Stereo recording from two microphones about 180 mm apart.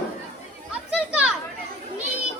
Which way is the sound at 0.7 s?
5° right (ahead or behind).